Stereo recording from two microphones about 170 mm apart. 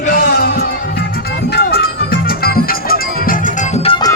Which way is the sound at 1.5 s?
65° left (ahead or behind).